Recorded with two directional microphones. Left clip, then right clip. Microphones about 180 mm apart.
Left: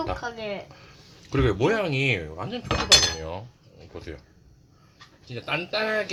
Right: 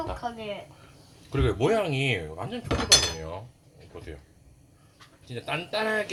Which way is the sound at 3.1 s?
10° left (ahead or behind).